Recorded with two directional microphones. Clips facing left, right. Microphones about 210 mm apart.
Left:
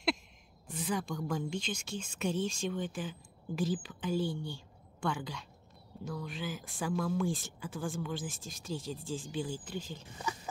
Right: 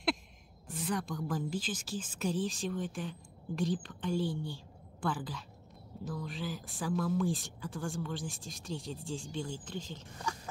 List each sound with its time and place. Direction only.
0.7 s a woman's voice: centre (ahead or behind)